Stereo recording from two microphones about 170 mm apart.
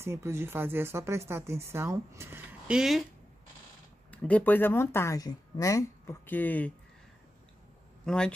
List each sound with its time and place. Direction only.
0.0 s speech: 15° right (ahead or behind)
4.1 s speech: 10° left (ahead or behind)
8.0 s speech: 5° left (ahead or behind)